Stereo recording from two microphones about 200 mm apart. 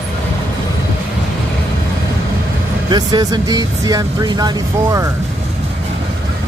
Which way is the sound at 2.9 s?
20° right (ahead or behind).